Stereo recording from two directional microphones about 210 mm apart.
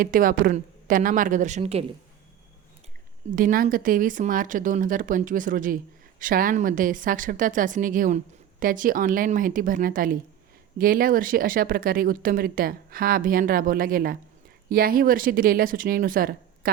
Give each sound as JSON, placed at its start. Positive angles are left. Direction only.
{"t": 0.0, "sound": "speech", "side_deg": -40}
{"t": 3.3, "sound": "speech", "side_deg": -45}